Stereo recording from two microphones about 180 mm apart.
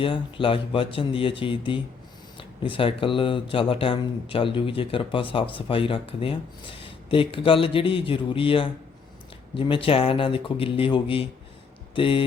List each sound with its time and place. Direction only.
0.0 s speech: 30° left (ahead or behind)